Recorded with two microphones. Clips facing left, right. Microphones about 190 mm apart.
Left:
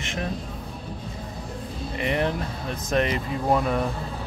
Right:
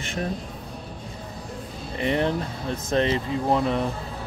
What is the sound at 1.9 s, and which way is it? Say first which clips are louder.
Speech: right 2 dB; 30° right (ahead or behind).